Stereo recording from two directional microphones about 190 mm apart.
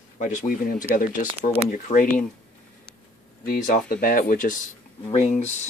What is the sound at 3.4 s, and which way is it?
Speech, 45° left (ahead or behind).